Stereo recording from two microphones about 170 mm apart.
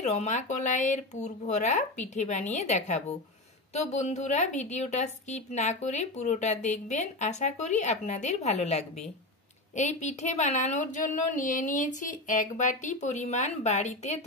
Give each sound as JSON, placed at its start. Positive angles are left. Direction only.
{"t": 0.0, "sound": "a woman's voice", "side_deg": 40}